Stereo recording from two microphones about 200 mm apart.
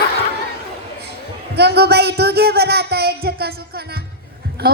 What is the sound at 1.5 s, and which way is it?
Speech, 55° right (ahead or behind).